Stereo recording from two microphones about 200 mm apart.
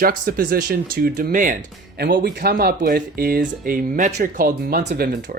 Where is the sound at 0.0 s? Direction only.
45° right (ahead or behind).